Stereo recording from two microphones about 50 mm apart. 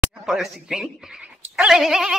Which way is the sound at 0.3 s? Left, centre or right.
Centre.